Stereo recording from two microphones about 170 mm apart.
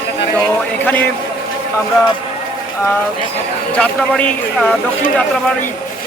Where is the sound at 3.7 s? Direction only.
5° left (ahead or behind).